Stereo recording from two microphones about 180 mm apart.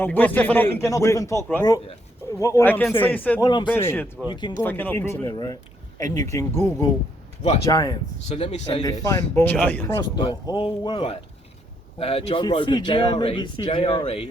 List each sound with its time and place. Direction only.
0.0 s a man's voice: 10° left (ahead or behind)
3.4 s speech: 25° left (ahead or behind)
3.7 s a man's voice: 10° left (ahead or behind)
8.4 s a man's voice: 35° left (ahead or behind)
8.8 s a man's voice: 20° left (ahead or behind)
10.0 s speech: 25° left (ahead or behind)